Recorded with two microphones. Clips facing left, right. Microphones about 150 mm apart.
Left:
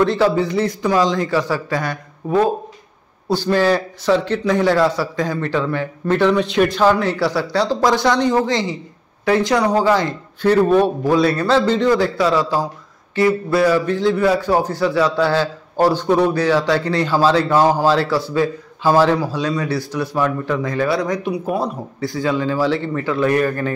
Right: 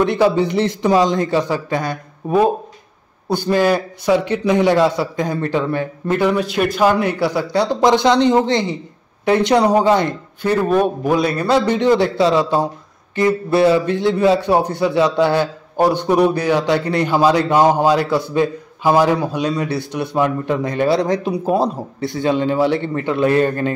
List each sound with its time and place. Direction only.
0.2 s a man's voice: 20° right (ahead or behind)